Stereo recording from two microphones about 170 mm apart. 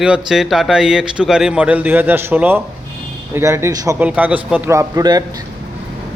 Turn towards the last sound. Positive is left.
turn(degrees=-25)  # may be behind; listen again after turning